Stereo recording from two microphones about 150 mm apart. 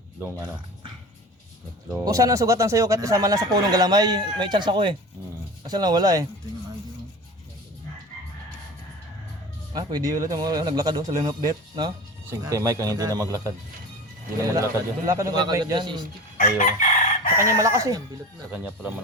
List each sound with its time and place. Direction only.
2.0 s speech: 25° right (ahead or behind)
9.7 s speech: 25° right (ahead or behind)
16.4 s chicken: 55° left (ahead or behind)
17.6 s speech: 20° right (ahead or behind)
18.5 s speech: 10° right (ahead or behind)